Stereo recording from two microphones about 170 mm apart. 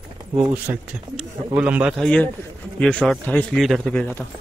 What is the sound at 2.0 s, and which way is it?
A man's voice, 5° left (ahead or behind).